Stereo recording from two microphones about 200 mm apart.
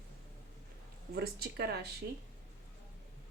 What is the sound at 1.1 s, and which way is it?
Speech, 55° right (ahead or behind).